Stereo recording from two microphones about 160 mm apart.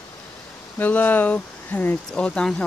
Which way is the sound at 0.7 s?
10° left (ahead or behind).